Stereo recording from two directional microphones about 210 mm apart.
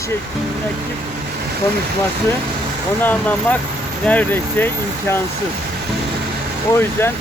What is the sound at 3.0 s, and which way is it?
Speech, 5° left (ahead or behind).